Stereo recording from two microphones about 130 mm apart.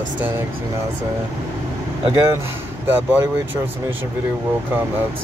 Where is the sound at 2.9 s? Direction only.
15° right (ahead or behind).